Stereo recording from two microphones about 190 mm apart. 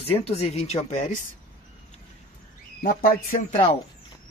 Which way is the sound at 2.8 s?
50° left (ahead or behind).